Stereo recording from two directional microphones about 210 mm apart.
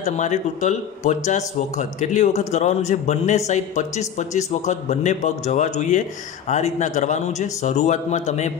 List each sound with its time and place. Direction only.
0.0 s speech: 35° left (ahead or behind)